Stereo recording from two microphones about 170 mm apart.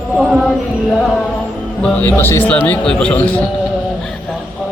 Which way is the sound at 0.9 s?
5° left (ahead or behind).